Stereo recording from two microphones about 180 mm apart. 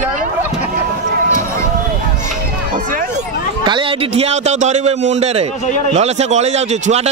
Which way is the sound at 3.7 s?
30° right (ahead or behind).